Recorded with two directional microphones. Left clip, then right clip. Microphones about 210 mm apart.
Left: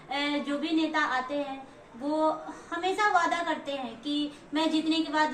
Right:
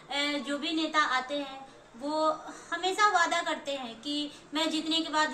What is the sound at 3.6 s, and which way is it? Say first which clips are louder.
A woman's voice: left 1 dB; 5° right (ahead or behind).